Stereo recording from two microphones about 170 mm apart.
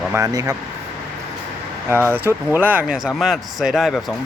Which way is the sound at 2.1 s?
10° right (ahead or behind).